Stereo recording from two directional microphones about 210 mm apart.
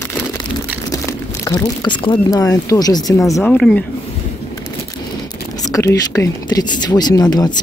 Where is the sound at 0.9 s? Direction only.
15° left (ahead or behind).